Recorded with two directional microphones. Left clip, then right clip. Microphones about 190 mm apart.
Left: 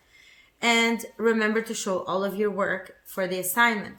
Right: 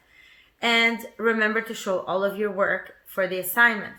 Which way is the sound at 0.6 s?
60° left (ahead or behind).